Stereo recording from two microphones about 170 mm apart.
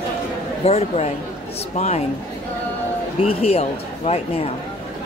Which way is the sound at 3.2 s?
35° left (ahead or behind).